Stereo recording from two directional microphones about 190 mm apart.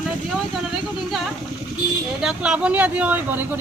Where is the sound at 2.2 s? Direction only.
5° right (ahead or behind).